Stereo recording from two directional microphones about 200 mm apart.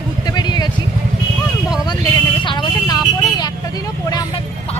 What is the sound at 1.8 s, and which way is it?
Vehicle, 20° left (ahead or behind).